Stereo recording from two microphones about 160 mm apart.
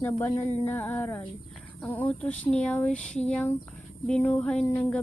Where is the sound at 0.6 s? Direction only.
10° left (ahead or behind).